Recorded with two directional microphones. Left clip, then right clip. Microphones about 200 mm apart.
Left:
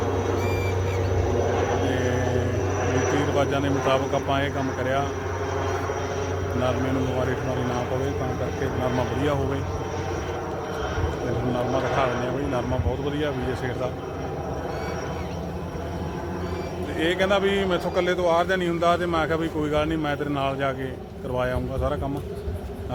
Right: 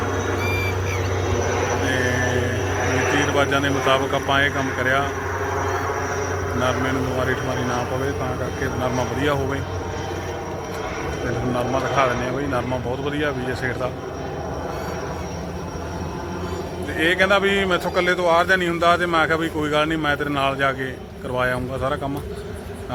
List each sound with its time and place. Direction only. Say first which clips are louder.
2.7 s vehicle: right 4 dB; 30° left (ahead or behind)
3.3 s speech: right 4 dB; centre (ahead or behind)
5.5 s vehicle: right 3 dB; 35° left (ahead or behind)
13.1 s speech: right 4 dB; 10° right (ahead or behind)
17.0 s speech: right 5 dB; 10° right (ahead or behind)